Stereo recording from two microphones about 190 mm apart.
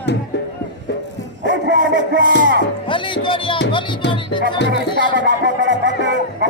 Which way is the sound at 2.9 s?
25° left (ahead or behind).